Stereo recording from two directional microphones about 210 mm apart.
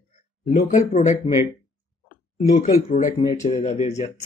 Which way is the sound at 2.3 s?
35° left (ahead or behind).